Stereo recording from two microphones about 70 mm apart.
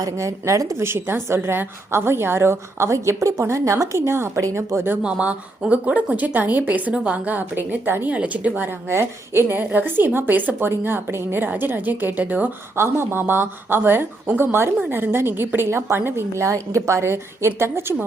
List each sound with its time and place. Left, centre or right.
0.0 s a woman's voice: right
0.8 s a woman's voice: right
5.0 s speech: centre
8.9 s speech: right
12.7 s a woman's voice: right